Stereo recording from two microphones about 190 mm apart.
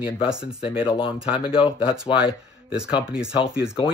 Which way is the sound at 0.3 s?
5° right (ahead or behind).